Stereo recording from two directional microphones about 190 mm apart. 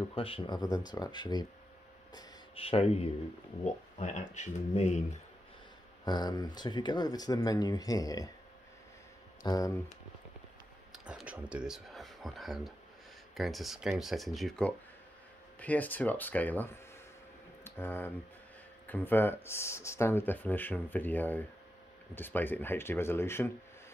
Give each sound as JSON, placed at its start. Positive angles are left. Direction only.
{"t": 0.1, "sound": "speech", "side_deg": 30}
{"t": 6.0, "sound": "speech", "side_deg": 20}
{"t": 9.4, "sound": "speech", "side_deg": 20}
{"t": 10.9, "sound": "speech", "side_deg": -5}